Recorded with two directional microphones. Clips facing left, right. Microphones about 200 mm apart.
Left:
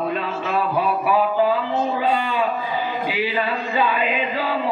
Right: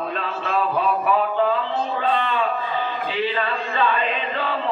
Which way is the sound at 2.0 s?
10° left (ahead or behind).